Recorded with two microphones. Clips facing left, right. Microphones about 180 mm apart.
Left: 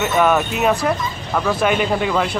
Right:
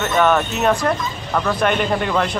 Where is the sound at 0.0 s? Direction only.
5° left (ahead or behind).